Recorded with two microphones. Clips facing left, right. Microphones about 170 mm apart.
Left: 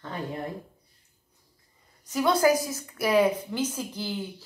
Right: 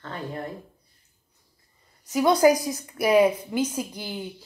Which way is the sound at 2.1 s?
15° right (ahead or behind).